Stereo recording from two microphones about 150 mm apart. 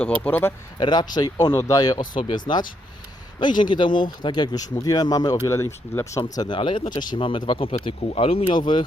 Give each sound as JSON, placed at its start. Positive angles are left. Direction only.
{"t": 0.0, "sound": "speech", "side_deg": 10}
{"t": 0.8, "sound": "speech", "side_deg": 30}
{"t": 3.4, "sound": "speech", "side_deg": 30}